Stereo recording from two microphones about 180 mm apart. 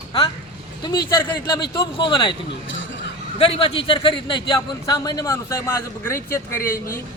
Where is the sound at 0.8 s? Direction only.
25° left (ahead or behind).